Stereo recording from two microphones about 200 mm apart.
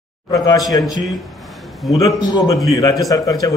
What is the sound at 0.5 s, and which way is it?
Speech, 20° left (ahead or behind).